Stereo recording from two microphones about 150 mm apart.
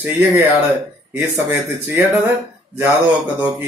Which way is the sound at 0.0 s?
15° right (ahead or behind).